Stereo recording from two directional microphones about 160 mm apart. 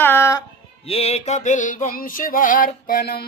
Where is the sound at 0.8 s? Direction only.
40° left (ahead or behind).